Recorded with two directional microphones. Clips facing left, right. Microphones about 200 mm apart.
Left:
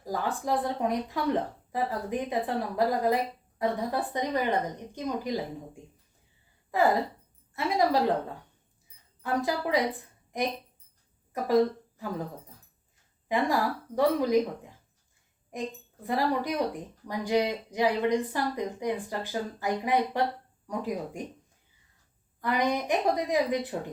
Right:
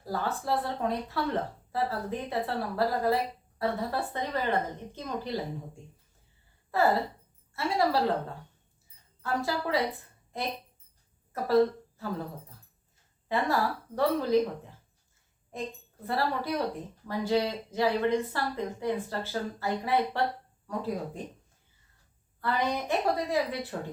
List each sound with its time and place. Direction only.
0.0 s speech: 15° left (ahead or behind)
9.2 s speech: 15° left (ahead or behind)
13.2 s speech: 15° left (ahead or behind)
15.5 s a woman's voice: 15° left (ahead or behind)
22.4 s speech: 15° left (ahead or behind)